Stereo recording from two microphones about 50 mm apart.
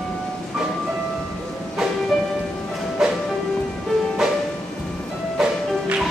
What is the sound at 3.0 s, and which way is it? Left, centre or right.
Music, centre.